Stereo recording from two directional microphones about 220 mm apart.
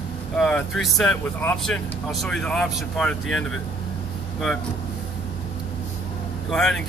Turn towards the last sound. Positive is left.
turn(degrees=5)  # may be behind; listen again after turning